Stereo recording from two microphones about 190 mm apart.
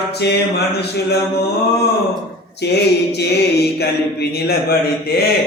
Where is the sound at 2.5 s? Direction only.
60° left (ahead or behind).